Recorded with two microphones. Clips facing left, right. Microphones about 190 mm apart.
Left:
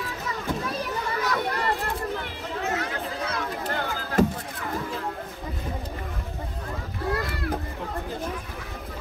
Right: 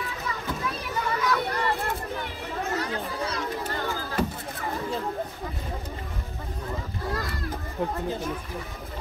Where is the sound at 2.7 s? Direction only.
65° left (ahead or behind).